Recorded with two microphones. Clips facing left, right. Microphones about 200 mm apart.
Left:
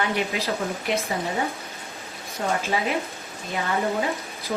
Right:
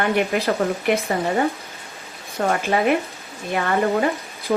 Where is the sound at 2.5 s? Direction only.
60° right (ahead or behind).